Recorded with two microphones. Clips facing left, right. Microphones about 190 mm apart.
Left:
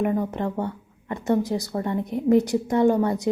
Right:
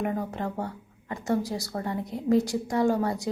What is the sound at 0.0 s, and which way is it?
A woman's voice, 20° left (ahead or behind).